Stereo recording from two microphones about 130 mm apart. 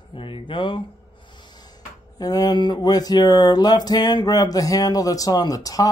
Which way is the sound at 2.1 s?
30° left (ahead or behind).